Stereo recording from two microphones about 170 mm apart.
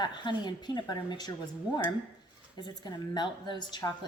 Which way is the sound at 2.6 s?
25° left (ahead or behind).